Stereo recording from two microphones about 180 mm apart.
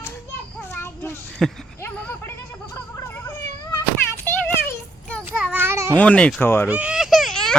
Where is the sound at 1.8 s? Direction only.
10° left (ahead or behind).